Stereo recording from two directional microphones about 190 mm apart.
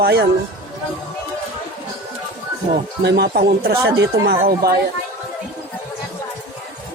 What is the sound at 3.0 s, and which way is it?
A woman's voice, 60° right (ahead or behind).